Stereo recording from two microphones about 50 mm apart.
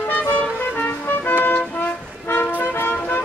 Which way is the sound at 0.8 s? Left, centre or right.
Left.